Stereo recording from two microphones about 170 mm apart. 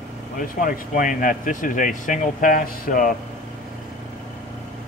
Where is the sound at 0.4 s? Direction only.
55° left (ahead or behind).